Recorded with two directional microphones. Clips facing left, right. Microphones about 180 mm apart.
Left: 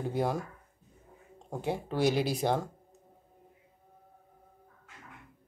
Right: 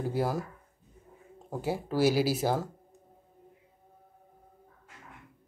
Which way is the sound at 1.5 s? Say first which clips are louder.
Right 2 dB; 5° right (ahead or behind).